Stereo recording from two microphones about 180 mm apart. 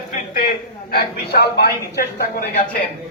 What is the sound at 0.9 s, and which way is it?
A man's voice, 60° left (ahead or behind).